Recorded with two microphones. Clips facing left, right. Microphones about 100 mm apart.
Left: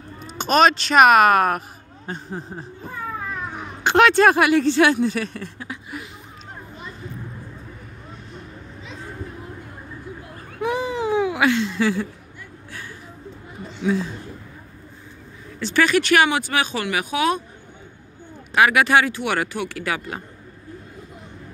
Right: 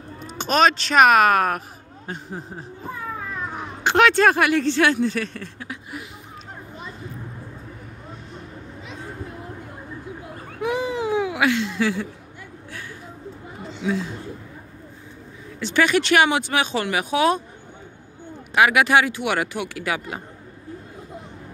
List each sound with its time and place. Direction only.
0.4 s speech: 5° left (ahead or behind)
3.8 s speech: centre (ahead or behind)
5.7 s speech: 10° right (ahead or behind)
10.6 s a sound: 5° right (ahead or behind)
15.6 s speech: 20° right (ahead or behind)
18.5 s speech: 15° right (ahead or behind)